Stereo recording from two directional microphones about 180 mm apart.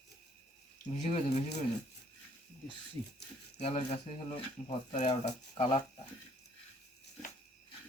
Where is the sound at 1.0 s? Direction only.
40° left (ahead or behind).